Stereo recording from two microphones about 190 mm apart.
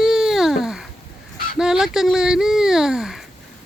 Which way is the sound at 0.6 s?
Centre (ahead or behind).